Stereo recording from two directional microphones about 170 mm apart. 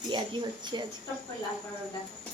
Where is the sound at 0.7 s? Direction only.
25° right (ahead or behind).